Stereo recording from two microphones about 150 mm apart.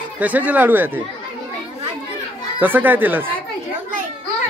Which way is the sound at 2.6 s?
10° right (ahead or behind).